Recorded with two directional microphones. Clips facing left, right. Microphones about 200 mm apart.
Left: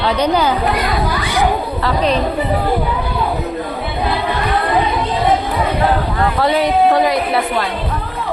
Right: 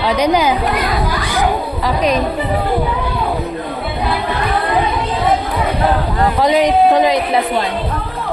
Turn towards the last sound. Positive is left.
turn(degrees=-20)  # may be behind; listen again after turning